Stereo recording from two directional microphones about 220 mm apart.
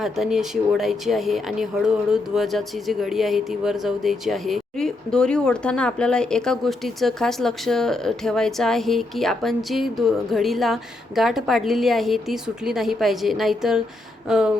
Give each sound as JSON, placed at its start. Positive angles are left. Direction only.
{"t": 0.0, "sound": "speech", "side_deg": 0}